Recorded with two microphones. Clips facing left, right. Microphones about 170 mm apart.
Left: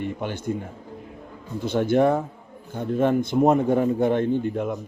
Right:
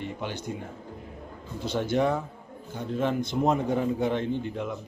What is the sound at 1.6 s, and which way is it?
Speech, 55° left (ahead or behind).